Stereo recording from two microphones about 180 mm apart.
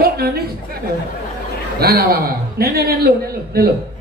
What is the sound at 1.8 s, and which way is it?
A man's voice, 60° right (ahead or behind).